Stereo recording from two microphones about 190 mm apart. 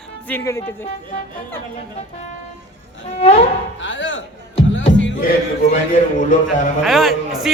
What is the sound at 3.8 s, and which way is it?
Speech, 75° left (ahead or behind).